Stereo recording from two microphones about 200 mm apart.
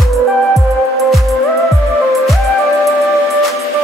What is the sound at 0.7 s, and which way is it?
Music, centre (ahead or behind).